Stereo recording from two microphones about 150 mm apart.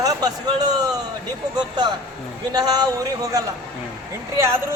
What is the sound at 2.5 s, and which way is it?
Speech, 25° right (ahead or behind).